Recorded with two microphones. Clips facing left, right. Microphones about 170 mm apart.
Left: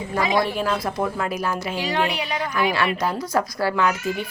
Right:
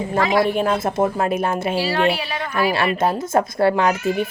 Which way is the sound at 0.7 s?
25° right (ahead or behind).